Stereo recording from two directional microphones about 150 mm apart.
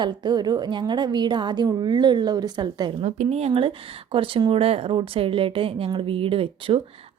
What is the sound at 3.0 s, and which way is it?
Speech, 45° right (ahead or behind).